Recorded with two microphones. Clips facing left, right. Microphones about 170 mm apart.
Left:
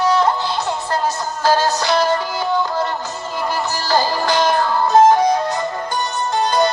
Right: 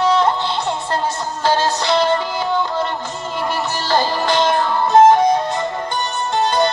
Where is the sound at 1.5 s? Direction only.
25° right (ahead or behind).